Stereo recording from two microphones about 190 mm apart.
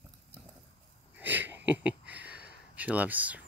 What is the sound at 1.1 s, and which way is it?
Wheeze, 10° right (ahead or behind).